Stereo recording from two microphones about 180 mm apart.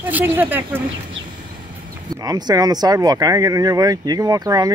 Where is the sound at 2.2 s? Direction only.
20° right (ahead or behind).